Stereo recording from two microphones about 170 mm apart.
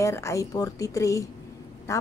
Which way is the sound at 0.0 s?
15° left (ahead or behind).